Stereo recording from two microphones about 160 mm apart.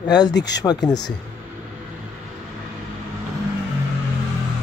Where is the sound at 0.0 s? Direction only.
25° left (ahead or behind).